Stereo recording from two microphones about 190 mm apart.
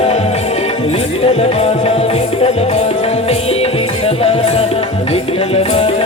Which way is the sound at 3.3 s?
30° left (ahead or behind).